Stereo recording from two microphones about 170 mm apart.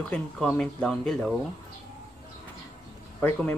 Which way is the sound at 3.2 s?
10° left (ahead or behind).